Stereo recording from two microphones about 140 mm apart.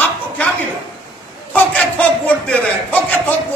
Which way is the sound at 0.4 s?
10° left (ahead or behind).